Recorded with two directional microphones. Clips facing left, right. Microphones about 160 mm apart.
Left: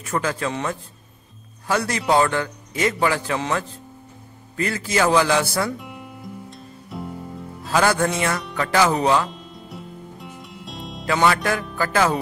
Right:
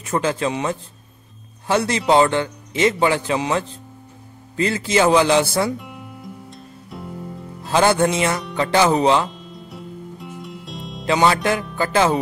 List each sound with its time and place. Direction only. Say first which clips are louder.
0.0 s speech: right 3 dB; 25° right (ahead or behind)
5.8 s music: right 1 dB; centre (ahead or behind)
7.6 s speech: right 3 dB; 25° right (ahead or behind)
9.3 s music: right 1 dB; centre (ahead or behind)
11.1 s speech: right 2 dB; 25° right (ahead or behind)